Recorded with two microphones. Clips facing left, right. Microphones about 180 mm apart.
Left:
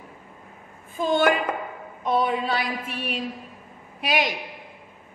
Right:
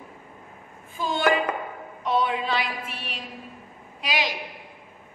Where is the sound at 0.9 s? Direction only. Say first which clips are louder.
Left 5 dB; 50° left (ahead or behind).